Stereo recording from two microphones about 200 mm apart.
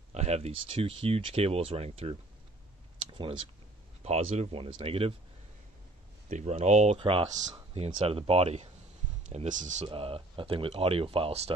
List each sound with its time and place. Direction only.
0.1 s speech: 35° right (ahead or behind)
3.2 s speech: 25° right (ahead or behind)
6.2 s speech: 40° right (ahead or behind)
9.8 s speech: 30° right (ahead or behind)